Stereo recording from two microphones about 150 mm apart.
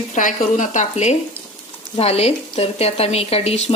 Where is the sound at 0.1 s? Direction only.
55° left (ahead or behind).